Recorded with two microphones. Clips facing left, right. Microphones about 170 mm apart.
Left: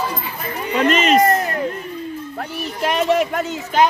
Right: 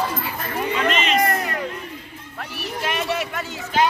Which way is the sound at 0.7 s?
40° left (ahead or behind).